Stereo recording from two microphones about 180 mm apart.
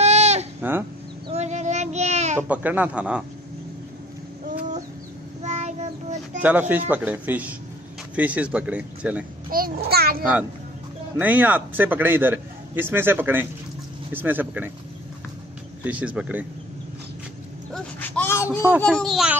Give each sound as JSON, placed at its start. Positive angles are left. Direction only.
{"t": 0.0, "sound": "a sound", "side_deg": -40}
{"t": 0.6, "sound": "a sound", "side_deg": -10}
{"t": 1.3, "sound": "a sound", "side_deg": -40}
{"t": 2.4, "sound": "a man's voice", "side_deg": -10}
{"t": 4.5, "sound": "chicken", "side_deg": -40}
{"t": 5.4, "sound": "child singing", "side_deg": -40}
{"t": 6.7, "sound": "a man's voice", "side_deg": -10}
{"t": 9.5, "sound": "a child's voice", "side_deg": -55}
{"t": 11.1, "sound": "a man's voice", "side_deg": -10}
{"t": 15.8, "sound": "a man's voice", "side_deg": -10}
{"t": 17.7, "sound": "a child's voice", "side_deg": 10}